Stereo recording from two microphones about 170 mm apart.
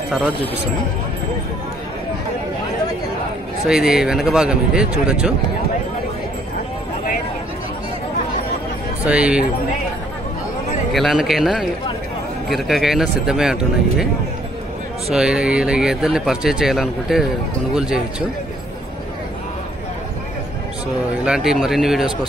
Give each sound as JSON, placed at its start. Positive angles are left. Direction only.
{"t": 3.6, "sound": "speech", "side_deg": -5}
{"t": 9.0, "sound": "speech", "side_deg": -5}
{"t": 10.9, "sound": "speech", "side_deg": 0}
{"t": 15.0, "sound": "speech", "side_deg": -5}
{"t": 21.3, "sound": "speech", "side_deg": -5}